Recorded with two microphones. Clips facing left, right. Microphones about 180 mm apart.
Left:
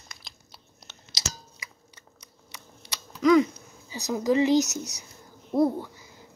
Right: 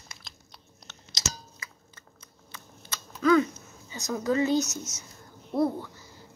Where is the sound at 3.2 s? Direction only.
15° left (ahead or behind).